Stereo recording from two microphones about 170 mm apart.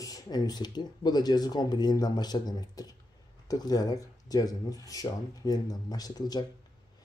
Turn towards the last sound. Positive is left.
turn(degrees=25)  # may be behind; listen again after turning